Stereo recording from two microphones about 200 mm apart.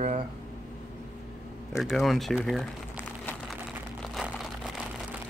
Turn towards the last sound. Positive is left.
turn(degrees=0)  # may be behind; listen again after turning